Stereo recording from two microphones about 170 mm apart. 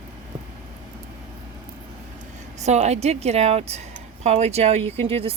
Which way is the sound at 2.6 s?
40° right (ahead or behind).